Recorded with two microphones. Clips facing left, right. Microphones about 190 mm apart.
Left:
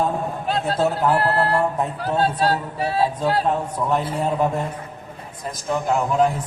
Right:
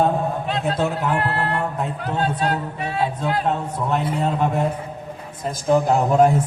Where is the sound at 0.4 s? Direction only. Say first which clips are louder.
Left 1 dB; 35° left (ahead or behind).